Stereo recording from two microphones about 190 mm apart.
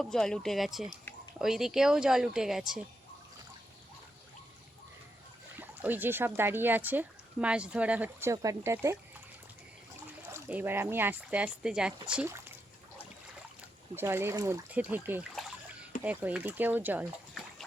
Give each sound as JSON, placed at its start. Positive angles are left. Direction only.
{"t": 0.0, "sound": "speech", "side_deg": 0}
{"t": 5.5, "sound": "speech", "side_deg": -10}
{"t": 10.3, "sound": "speech", "side_deg": -10}
{"t": 13.9, "sound": "speech", "side_deg": -10}